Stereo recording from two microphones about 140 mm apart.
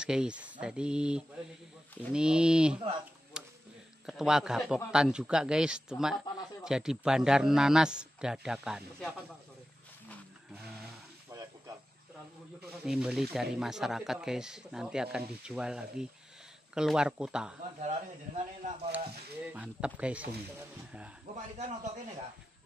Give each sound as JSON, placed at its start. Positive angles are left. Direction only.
{"t": 0.0, "sound": "a man's voice", "side_deg": -5}
{"t": 3.4, "sound": "a sound", "side_deg": -5}
{"t": 4.0, "sound": "a man's voice", "side_deg": -5}
{"t": 12.8, "sound": "a man's voice", "side_deg": -5}
{"t": 17.7, "sound": "speech", "side_deg": -55}
{"t": 19.4, "sound": "speech", "side_deg": -10}